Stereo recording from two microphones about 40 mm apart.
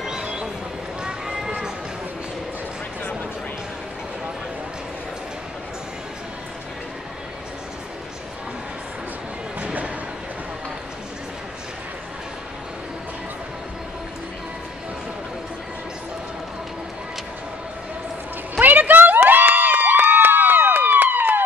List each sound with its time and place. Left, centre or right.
0.0 s a sound: right
1.0 s run: centre
18.6 s crowd: right